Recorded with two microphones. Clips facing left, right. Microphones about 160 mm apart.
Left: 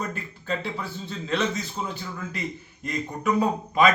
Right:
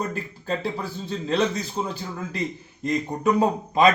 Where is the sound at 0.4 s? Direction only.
35° right (ahead or behind).